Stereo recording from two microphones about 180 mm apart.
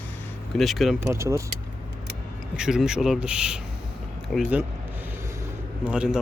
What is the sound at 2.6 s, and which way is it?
Speech, 5° right (ahead or behind).